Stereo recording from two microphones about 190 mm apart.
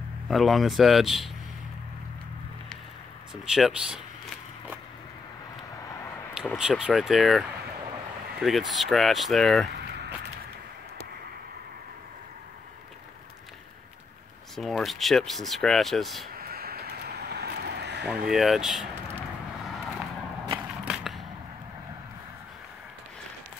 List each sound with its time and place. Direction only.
0.3 s speech: centre (ahead or behind)
3.4 s speech: 5° right (ahead or behind)
6.4 s speech: centre (ahead or behind)
14.5 s speech: centre (ahead or behind)
16.3 s a sound: 55° right (ahead or behind)
18.0 s speech: 5° right (ahead or behind)
20.8 s a sound: centre (ahead or behind)